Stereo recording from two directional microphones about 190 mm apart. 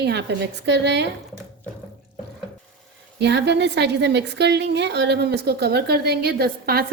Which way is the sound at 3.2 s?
65° right (ahead or behind).